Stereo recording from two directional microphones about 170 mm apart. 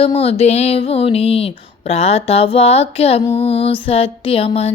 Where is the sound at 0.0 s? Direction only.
35° left (ahead or behind).